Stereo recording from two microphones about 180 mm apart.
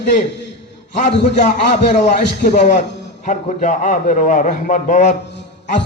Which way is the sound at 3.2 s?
45° left (ahead or behind).